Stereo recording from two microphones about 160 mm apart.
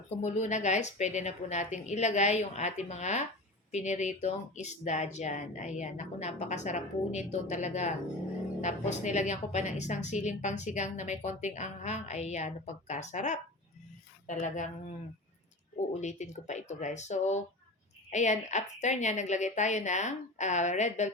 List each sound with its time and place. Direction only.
0.2 s a woman's voice: 50° left (ahead or behind)